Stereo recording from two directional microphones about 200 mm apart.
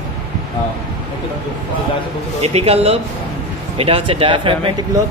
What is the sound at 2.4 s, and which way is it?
A man's voice, 30° right (ahead or behind).